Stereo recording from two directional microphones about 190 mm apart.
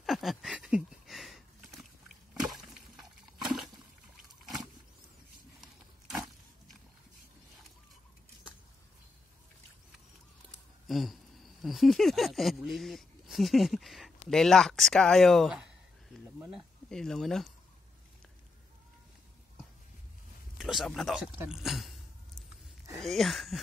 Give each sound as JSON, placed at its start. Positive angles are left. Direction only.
{"t": 0.0, "sound": "a sound", "side_deg": 0}
{"t": 3.4, "sound": "water", "side_deg": 0}
{"t": 5.6, "sound": "pig", "side_deg": 0}
{"t": 10.9, "sound": "speech", "side_deg": 0}
{"t": 16.3, "sound": "a sound", "side_deg": -5}
{"t": 20.5, "sound": "speech", "side_deg": 0}
{"t": 22.9, "sound": "speech", "side_deg": 0}